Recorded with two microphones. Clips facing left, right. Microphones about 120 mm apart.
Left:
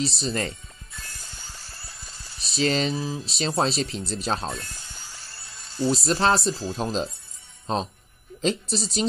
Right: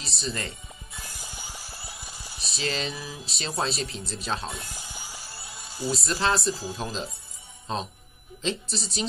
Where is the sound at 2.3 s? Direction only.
Centre (ahead or behind).